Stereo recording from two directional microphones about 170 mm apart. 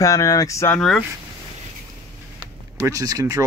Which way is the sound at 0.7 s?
5° left (ahead or behind).